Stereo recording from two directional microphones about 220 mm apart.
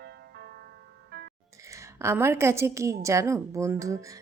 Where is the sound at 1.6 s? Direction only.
15° right (ahead or behind).